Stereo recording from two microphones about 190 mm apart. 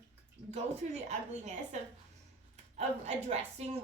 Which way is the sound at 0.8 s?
40° right (ahead or behind).